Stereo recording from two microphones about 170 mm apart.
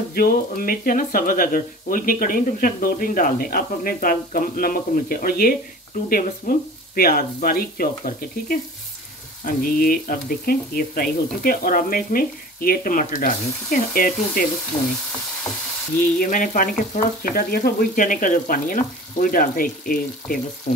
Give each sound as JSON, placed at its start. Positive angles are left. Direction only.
{"t": 0.1, "sound": "speech", "side_deg": 60}
{"t": 14.7, "sound": "frying", "side_deg": 25}
{"t": 16.2, "sound": "speech", "side_deg": 50}